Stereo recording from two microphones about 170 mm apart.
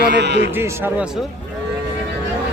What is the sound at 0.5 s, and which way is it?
Speech, 15° right (ahead or behind).